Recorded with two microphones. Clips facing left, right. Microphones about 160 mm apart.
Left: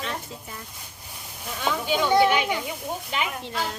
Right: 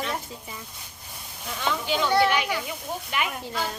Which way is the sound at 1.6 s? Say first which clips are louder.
Left 1 dB; 10° left (ahead or behind).